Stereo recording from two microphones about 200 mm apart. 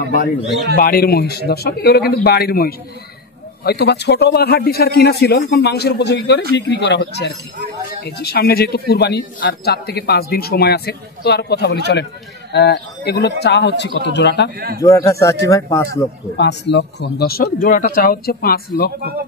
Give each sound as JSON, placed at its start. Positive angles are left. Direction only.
{"t": 0.7, "sound": "a man's voice", "side_deg": 50}
{"t": 14.8, "sound": "a man's voice", "side_deg": 15}
{"t": 16.3, "sound": "a man's voice", "side_deg": 60}